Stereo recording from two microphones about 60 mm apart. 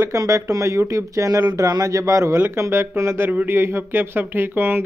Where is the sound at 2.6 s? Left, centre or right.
Right.